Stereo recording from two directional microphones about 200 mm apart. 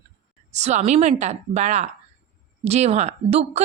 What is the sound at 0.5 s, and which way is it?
A woman's voice, 35° right (ahead or behind).